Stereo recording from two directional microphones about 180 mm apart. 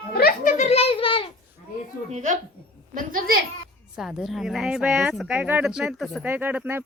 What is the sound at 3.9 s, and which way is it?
Speech, centre (ahead or behind).